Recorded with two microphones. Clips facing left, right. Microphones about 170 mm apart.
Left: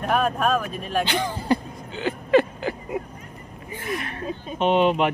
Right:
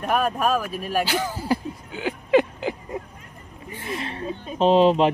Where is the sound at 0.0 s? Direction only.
5° right (ahead or behind).